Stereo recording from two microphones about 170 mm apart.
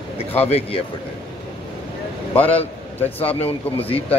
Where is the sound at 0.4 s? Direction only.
35° left (ahead or behind).